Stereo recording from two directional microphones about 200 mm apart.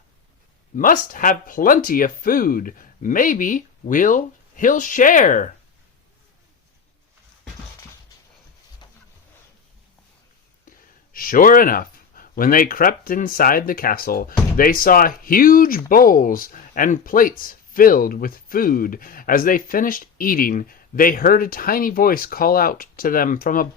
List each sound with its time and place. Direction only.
0.8 s speech: 45° left (ahead or behind)
10.7 s speech: 45° left (ahead or behind)